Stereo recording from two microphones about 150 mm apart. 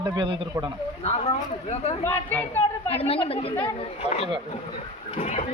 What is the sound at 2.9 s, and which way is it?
Speech, 40° left (ahead or behind).